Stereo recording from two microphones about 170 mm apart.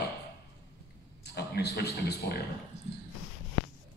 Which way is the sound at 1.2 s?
70° left (ahead or behind).